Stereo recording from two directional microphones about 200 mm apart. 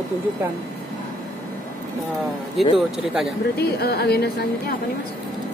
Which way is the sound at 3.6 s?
50° left (ahead or behind).